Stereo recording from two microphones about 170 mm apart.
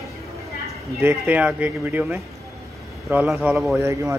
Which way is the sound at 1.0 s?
10° right (ahead or behind).